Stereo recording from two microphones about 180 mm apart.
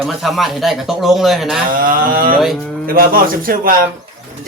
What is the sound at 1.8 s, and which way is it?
Speech, 55° right (ahead or behind).